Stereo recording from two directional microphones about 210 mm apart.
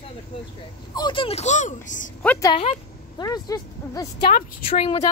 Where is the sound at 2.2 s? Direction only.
10° left (ahead or behind).